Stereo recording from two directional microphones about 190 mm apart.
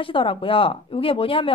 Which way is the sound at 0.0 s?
30° left (ahead or behind).